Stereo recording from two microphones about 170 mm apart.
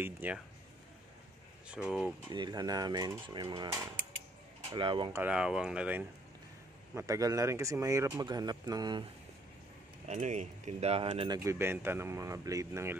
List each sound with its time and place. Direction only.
0.0 s speech: 10° right (ahead or behind)
1.7 s speech: 5° right (ahead or behind)
2.3 s speech: 25° right (ahead or behind)
5.1 s speech: 5° right (ahead or behind)
7.0 s speech: 20° right (ahead or behind)
10.0 s speech: 45° right (ahead or behind)
11.3 s speech: 15° right (ahead or behind)